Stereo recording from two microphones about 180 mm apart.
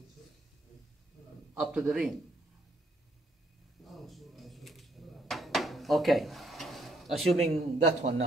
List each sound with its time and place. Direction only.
1.5 s a man's voice: 5° right (ahead or behind)
3.9 s a sound: centre (ahead or behind)
7.4 s a man's voice: 35° right (ahead or behind)